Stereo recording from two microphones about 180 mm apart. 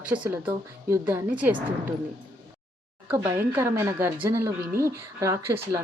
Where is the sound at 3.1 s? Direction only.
15° right (ahead or behind).